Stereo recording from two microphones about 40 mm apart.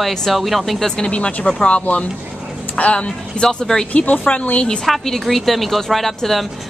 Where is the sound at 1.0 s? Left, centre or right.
Left.